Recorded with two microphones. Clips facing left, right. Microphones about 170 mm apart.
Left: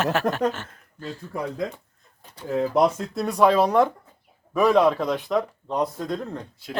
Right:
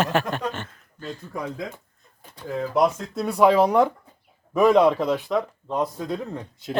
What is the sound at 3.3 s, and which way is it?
Speech, 10° right (ahead or behind).